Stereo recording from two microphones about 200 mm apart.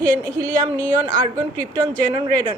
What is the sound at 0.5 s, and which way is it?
Speech, 20° right (ahead or behind).